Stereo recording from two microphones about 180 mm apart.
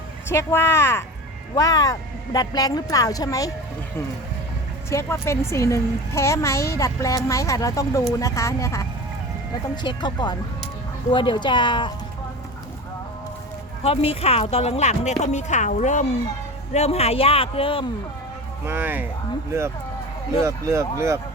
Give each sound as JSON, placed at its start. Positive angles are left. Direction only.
{"t": 0.3, "sound": "a child's voice", "side_deg": 15}
{"t": 4.9, "sound": "a child's voice", "side_deg": 15}
{"t": 13.8, "sound": "speech", "side_deg": 30}
{"t": 18.6, "sound": "speech", "side_deg": -10}
{"t": 20.4, "sound": "speech", "side_deg": -15}